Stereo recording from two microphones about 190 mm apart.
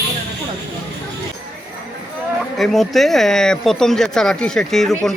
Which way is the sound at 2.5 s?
Centre (ahead or behind).